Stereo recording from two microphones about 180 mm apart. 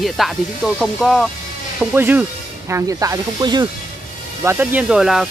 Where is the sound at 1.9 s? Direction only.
10° right (ahead or behind).